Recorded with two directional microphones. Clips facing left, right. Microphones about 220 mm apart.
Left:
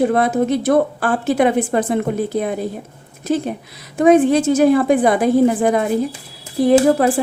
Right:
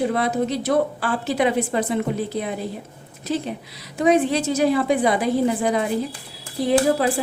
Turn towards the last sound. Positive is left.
turn(degrees=50)  # may be behind; listen again after turning